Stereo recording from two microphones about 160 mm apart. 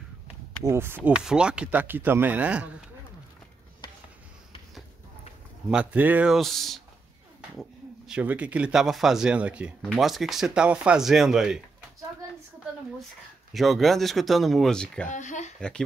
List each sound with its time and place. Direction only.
0.7 s speech: 15° right (ahead or behind)
5.7 s speech: 10° right (ahead or behind)
8.1 s speech: 10° right (ahead or behind)
13.5 s speech: centre (ahead or behind)
15.0 s speech: 50° left (ahead or behind)